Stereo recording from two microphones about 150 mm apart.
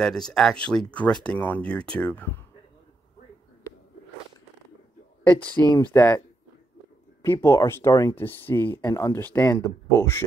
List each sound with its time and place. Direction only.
0.0 s speech: 5° left (ahead or behind)
5.7 s speech: 15° left (ahead or behind)
7.2 s speech: 20° left (ahead or behind)